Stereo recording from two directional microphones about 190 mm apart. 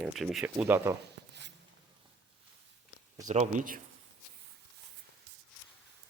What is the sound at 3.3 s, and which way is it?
Speech, 40° right (ahead or behind).